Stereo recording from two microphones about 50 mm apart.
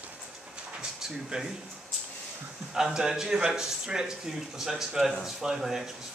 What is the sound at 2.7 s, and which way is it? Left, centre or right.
Speech, centre.